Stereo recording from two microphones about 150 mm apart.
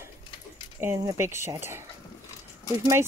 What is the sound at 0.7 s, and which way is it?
Speech, 15° right (ahead or behind).